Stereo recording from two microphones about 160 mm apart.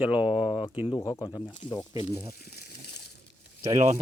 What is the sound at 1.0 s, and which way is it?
Speech, 20° left (ahead or behind).